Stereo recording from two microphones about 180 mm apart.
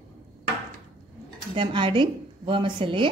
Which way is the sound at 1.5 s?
30° right (ahead or behind).